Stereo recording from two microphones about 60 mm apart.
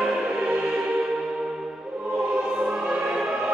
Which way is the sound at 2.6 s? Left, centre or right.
Centre.